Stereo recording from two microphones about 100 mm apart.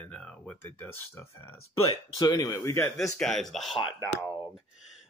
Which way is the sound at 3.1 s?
5° left (ahead or behind).